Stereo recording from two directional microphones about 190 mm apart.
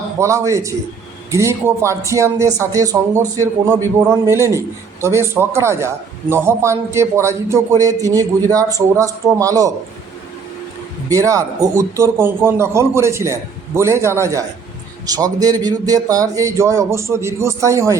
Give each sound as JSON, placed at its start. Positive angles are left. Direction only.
{"t": 0.2, "sound": "a man's voice", "side_deg": -15}
{"t": 11.1, "sound": "a man's voice", "side_deg": -15}